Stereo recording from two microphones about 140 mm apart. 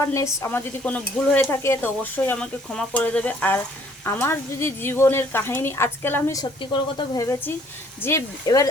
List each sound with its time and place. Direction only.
0.0 s stir: 20° left (ahead or behind)
7.2 s speech: 25° left (ahead or behind)
8.0 s stir: 15° left (ahead or behind)
8.4 s speech: 25° left (ahead or behind)